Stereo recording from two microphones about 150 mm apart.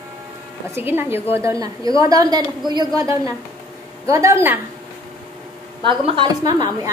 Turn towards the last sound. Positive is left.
turn(degrees=-25)  # may be behind; listen again after turning